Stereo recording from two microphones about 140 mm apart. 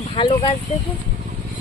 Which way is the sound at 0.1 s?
40° left (ahead or behind).